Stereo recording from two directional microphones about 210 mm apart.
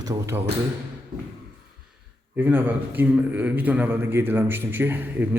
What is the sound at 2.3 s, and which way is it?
A man's voice, 10° right (ahead or behind).